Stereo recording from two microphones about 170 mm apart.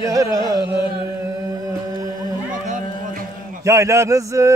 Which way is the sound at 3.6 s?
20° right (ahead or behind).